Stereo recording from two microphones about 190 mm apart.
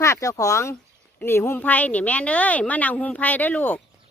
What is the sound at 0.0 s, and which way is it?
Speech, 15° left (ahead or behind).